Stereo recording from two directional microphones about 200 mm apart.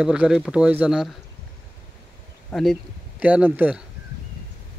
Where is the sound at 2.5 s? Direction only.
Centre (ahead or behind).